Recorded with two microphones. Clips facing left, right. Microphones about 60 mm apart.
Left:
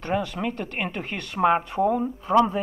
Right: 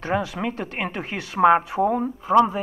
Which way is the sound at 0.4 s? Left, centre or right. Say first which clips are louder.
Right 1 dB; right.